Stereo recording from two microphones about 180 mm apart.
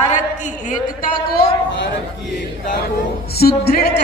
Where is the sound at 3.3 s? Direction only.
60° left (ahead or behind).